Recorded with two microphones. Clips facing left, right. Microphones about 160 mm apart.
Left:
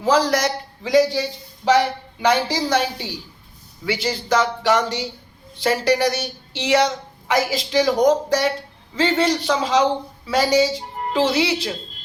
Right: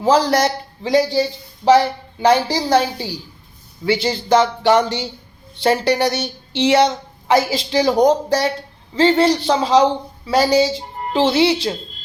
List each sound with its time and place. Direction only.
0.0 s a woman's voice: 30° right (ahead or behind)
2.2 s a man's voice: 30° right (ahead or behind)
3.8 s a woman's voice: 30° right (ahead or behind)